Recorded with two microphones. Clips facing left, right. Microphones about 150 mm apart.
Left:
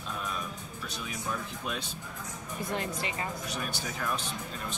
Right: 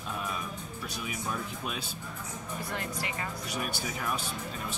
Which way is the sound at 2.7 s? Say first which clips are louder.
Left 4 dB; 20° left (ahead or behind).